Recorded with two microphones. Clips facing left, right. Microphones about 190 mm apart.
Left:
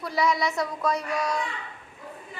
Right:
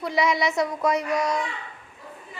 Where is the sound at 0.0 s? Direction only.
20° right (ahead or behind).